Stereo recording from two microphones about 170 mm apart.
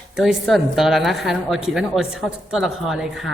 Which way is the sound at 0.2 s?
Centre (ahead or behind).